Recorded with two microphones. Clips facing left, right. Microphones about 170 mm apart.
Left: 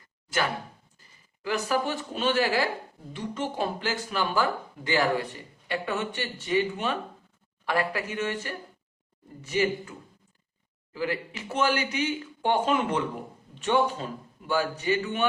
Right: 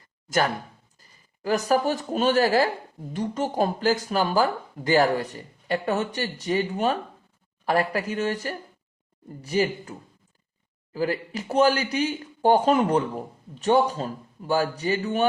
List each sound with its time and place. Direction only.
0.9 s speech: 40° right (ahead or behind)
10.9 s speech: 40° right (ahead or behind)